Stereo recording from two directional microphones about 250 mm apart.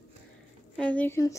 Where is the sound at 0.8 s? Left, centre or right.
Centre.